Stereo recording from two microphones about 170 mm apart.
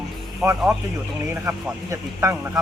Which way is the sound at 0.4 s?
Centre (ahead or behind).